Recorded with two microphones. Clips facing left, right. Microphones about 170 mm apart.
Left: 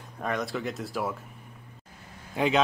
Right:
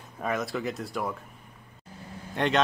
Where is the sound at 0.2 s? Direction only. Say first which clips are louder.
Right 1 dB; 5° right (ahead or behind).